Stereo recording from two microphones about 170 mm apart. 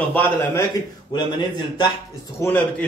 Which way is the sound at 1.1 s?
25° left (ahead or behind).